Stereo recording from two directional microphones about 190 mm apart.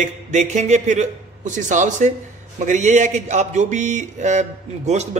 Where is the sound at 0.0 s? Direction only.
40° right (ahead or behind).